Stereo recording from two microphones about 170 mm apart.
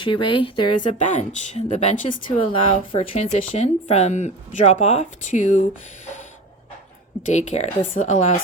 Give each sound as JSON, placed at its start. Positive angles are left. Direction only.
{"t": 0.0, "sound": "speech", "side_deg": 30}
{"t": 0.8, "sound": "speech", "side_deg": 45}
{"t": 7.3, "sound": "speech", "side_deg": 40}